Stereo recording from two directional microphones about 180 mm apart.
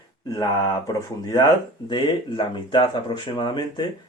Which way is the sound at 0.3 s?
20° left (ahead or behind).